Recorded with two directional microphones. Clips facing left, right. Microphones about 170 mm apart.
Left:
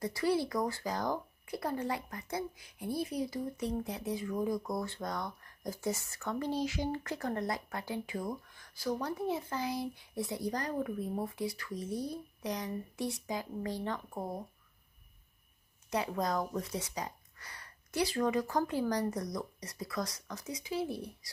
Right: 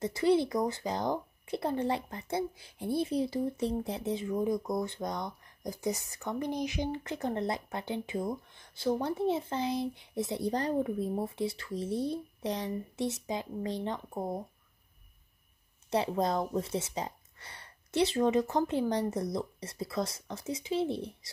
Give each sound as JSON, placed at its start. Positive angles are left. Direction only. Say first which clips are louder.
{"t": 0.0, "sound": "speech", "louder": "right 5 dB", "side_deg": -25}
{"t": 15.9, "sound": "speech", "louder": "right 4 dB", "side_deg": -25}